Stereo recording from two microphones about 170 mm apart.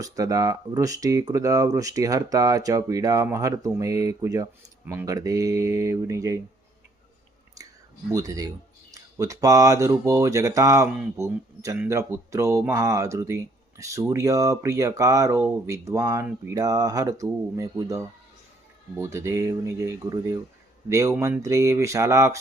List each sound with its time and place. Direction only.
0.0 s speech: 20° right (ahead or behind)
8.1 s speech: 20° right (ahead or behind)